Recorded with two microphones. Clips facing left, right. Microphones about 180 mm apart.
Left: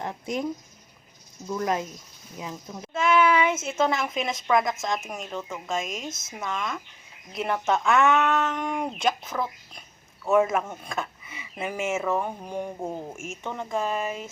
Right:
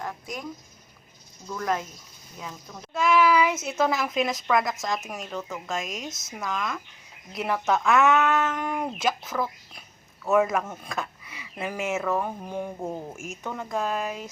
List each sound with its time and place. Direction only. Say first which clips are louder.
0.0 s speech: left 5 dB; 25° left (ahead or behind)
1.5 s speech: left 2 dB; 25° left (ahead or behind)
2.9 s speech: even; centre (ahead or behind)